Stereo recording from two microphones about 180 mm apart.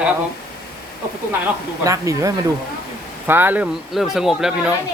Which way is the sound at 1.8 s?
15° right (ahead or behind).